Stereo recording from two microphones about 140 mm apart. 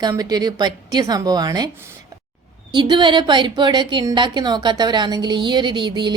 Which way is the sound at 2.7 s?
35° right (ahead or behind).